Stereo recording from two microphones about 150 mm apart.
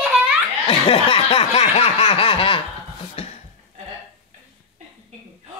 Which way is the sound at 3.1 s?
45° left (ahead or behind).